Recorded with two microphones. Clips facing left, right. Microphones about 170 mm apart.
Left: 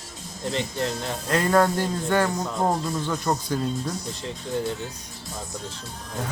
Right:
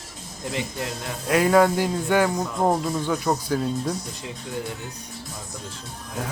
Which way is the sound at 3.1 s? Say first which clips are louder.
Right 2 dB; 5° right (ahead or behind).